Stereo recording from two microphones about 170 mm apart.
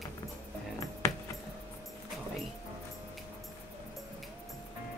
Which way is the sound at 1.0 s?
15° left (ahead or behind).